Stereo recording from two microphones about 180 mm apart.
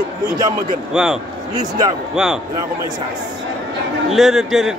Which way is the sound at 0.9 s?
5° right (ahead or behind).